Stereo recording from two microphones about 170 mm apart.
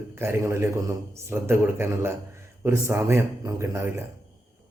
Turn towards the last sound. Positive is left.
turn(degrees=-15)  # may be behind; listen again after turning